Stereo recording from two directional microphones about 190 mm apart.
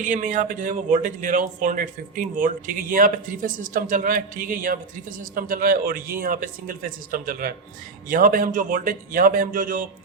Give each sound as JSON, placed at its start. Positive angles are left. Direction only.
{"t": 0.0, "sound": "a man's voice", "side_deg": -40}